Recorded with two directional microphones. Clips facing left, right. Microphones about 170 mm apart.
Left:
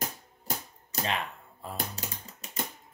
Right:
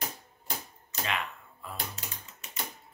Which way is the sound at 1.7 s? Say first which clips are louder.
Left 3 dB; 35° left (ahead or behind).